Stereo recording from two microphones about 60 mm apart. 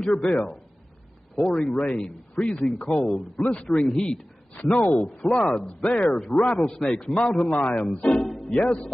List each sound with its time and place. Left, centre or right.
0.0 s a man's voice: centre
4.6 s speech: left
5.0 s a man's voice: centre